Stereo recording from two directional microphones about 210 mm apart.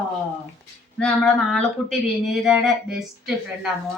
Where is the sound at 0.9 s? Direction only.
5° left (ahead or behind).